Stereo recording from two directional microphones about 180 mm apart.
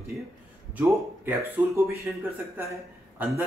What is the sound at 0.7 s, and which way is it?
A man's voice, 15° right (ahead or behind).